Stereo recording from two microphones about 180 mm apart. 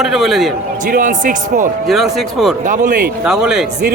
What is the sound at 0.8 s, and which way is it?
Speech, 45° right (ahead or behind).